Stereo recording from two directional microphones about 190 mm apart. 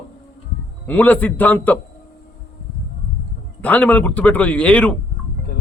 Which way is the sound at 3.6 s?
10° left (ahead or behind).